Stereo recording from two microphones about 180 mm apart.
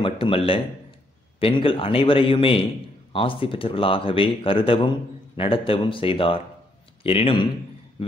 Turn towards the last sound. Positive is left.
turn(degrees=30)  # may be behind; listen again after turning